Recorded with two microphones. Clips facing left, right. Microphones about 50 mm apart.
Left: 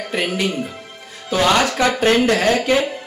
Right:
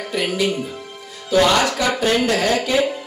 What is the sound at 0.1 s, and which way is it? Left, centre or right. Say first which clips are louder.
Speech: right 1 dB; left.